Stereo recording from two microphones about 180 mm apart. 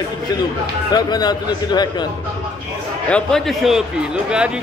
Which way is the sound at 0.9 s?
20° left (ahead or behind).